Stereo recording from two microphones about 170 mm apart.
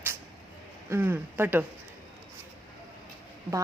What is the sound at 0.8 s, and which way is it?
Speech, 10° right (ahead or behind).